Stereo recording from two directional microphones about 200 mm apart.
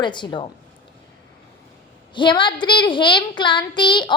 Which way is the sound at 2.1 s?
25° left (ahead or behind).